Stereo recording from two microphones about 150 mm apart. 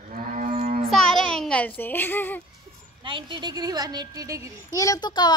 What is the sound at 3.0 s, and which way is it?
A woman's voice, 35° right (ahead or behind).